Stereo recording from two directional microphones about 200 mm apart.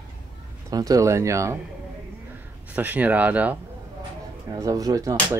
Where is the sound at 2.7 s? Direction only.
10° right (ahead or behind).